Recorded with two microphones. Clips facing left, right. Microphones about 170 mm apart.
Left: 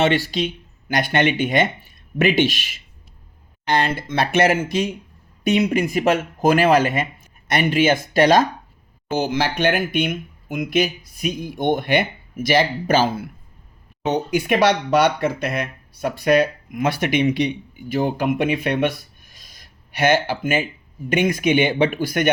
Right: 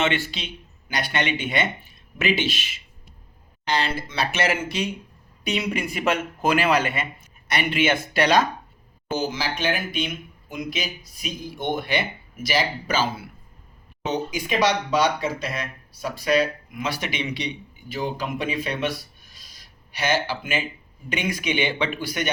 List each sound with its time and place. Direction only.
0.0 s speech: 40° left (ahead or behind)
3.7 s speech: 55° left (ahead or behind)
9.1 s speech: 60° left (ahead or behind)